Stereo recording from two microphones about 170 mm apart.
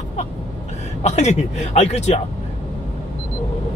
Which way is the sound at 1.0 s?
40° left (ahead or behind).